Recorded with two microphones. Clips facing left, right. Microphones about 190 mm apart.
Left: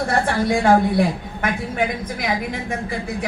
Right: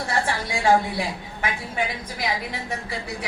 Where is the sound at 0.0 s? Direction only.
55° left (ahead or behind).